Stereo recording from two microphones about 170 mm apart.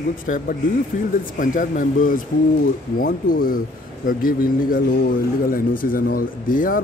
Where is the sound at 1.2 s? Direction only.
50° left (ahead or behind).